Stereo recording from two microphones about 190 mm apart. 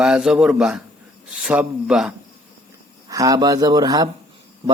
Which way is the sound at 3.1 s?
20° right (ahead or behind).